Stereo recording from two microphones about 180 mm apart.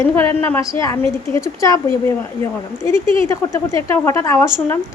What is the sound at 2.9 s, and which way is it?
Speech, 35° right (ahead or behind).